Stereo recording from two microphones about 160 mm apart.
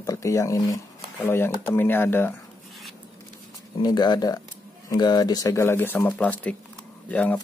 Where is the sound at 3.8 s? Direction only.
25° left (ahead or behind).